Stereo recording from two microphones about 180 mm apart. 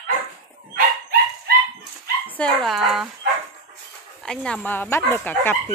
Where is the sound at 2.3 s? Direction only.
5° left (ahead or behind).